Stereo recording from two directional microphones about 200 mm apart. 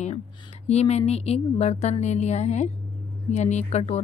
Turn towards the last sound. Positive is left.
turn(degrees=35)  # may be behind; listen again after turning